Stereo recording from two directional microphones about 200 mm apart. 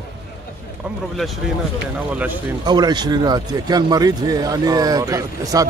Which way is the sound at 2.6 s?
20° right (ahead or behind).